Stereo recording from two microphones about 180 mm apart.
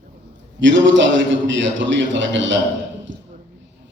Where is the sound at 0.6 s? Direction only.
90° right.